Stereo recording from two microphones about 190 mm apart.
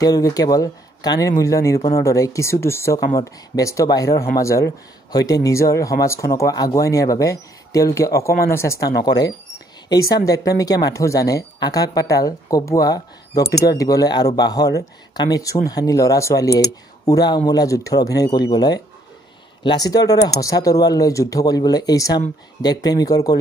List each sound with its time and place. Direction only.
0.0 s speech: 20° left (ahead or behind)